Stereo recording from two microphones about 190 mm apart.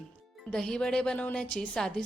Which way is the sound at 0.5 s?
5° left (ahead or behind).